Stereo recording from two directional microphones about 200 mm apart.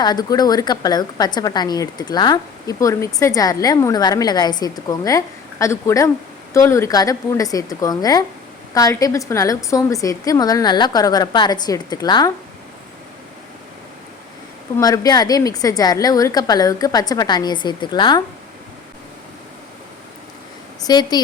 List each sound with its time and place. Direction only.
0.0 s a woman's voice: 20° left (ahead or behind)
14.8 s a woman's voice: 20° left (ahead or behind)
20.8 s a woman's voice: 20° left (ahead or behind)